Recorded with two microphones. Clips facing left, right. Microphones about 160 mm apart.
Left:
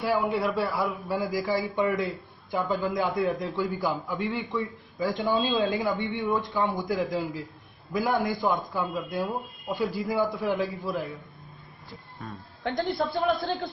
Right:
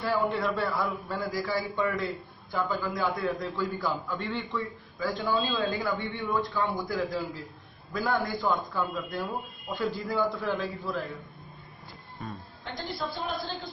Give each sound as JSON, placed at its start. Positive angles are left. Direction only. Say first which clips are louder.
{"t": 0.0, "sound": "a man's voice", "louder": "left 2 dB", "side_deg": 10}
{"t": 12.6, "sound": "speech", "louder": "left 8 dB", "side_deg": 55}